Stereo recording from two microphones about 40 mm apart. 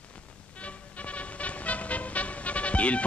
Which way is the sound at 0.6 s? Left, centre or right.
Left.